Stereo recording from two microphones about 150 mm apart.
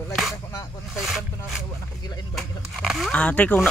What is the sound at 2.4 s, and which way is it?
Speech, centre (ahead or behind).